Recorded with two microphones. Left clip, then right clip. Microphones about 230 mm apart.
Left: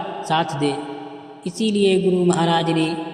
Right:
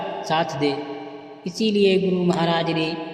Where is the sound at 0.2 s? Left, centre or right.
Left.